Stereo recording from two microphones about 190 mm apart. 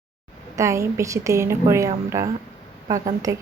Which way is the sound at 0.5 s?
15° right (ahead or behind).